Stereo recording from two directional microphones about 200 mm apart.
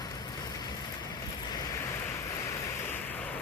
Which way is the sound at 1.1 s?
20° left (ahead or behind).